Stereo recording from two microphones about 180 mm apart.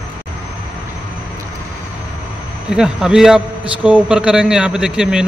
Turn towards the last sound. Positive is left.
turn(degrees=-5)  # may be behind; listen again after turning